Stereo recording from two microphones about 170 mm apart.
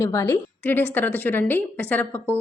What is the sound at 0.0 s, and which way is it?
A woman's voice, 15° left (ahead or behind).